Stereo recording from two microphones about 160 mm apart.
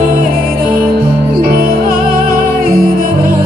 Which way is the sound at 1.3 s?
65° right (ahead or behind).